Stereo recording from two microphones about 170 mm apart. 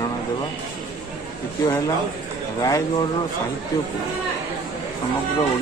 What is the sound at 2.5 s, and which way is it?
Speech, 20° left (ahead or behind).